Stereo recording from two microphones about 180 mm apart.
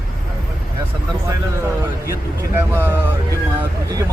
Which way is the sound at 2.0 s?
15° right (ahead or behind).